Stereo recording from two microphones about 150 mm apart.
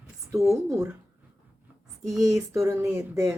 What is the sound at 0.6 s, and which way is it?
Speech, 20° right (ahead or behind).